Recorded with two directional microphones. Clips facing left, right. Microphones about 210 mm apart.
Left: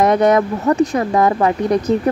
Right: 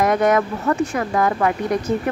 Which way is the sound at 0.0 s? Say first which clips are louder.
Left 4 dB; 35° left (ahead or behind).